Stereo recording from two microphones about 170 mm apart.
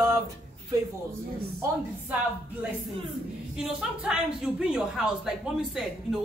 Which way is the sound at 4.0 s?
5° right (ahead or behind).